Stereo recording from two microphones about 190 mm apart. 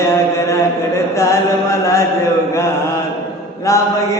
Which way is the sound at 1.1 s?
15° left (ahead or behind).